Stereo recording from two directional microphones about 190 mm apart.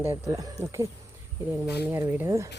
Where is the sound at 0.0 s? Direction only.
15° right (ahead or behind).